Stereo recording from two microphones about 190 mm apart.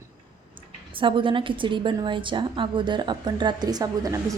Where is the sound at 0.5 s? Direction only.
25° right (ahead or behind).